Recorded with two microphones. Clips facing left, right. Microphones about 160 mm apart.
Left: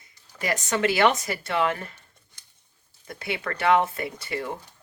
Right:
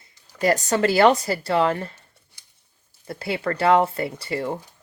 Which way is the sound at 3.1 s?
30° right (ahead or behind).